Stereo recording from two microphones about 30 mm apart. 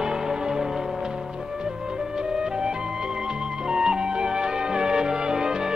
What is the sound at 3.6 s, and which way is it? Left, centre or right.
Music, right.